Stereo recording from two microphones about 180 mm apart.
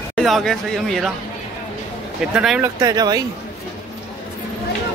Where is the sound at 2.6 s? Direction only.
20° right (ahead or behind).